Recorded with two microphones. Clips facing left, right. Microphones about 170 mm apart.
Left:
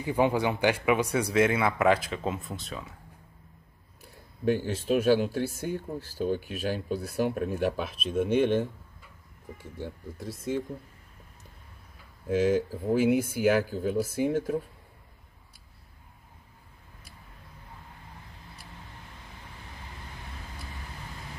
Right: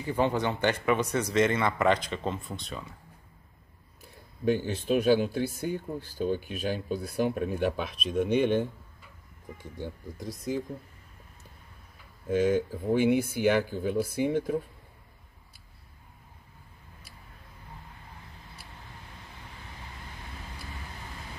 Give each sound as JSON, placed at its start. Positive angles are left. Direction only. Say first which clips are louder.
{"t": 0.0, "sound": "a man's voice", "louder": "left 2 dB", "side_deg": 10}
{"t": 4.5, "sound": "speech", "louder": "even", "side_deg": 0}
{"t": 9.8, "sound": "speech", "louder": "right 1 dB", "side_deg": 0}
{"t": 12.3, "sound": "speech", "louder": "even", "side_deg": 5}